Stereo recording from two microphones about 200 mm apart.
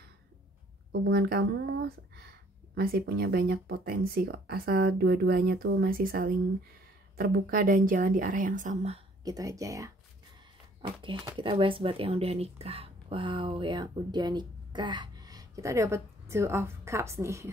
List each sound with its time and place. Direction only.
1.0 s speech: 55° right (ahead or behind); by 9.0 s 35° right (ahead or behind)
9.2 s speech: 20° right (ahead or behind)